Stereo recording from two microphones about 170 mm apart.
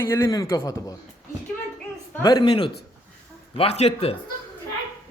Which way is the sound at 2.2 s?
25° left (ahead or behind).